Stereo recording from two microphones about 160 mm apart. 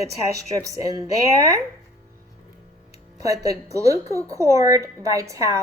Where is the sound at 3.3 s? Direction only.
20° right (ahead or behind).